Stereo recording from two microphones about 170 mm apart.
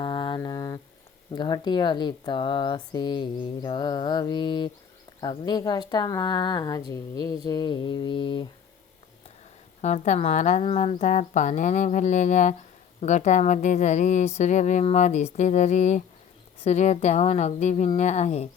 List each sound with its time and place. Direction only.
0.0 s mantra: 25° left (ahead or behind)
1.4 s speech: 25° left (ahead or behind)
9.8 s a woman's voice: 40° left (ahead or behind)
10.8 s a sound: 45° left (ahead or behind)
16.6 s a woman's voice: 40° left (ahead or behind)